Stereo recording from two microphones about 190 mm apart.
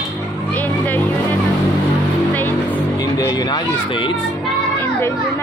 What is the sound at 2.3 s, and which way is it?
Music, 10° left (ahead or behind).